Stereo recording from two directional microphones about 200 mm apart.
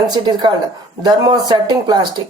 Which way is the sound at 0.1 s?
20° right (ahead or behind).